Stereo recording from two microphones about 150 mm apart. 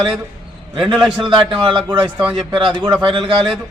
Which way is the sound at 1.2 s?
30° right (ahead or behind).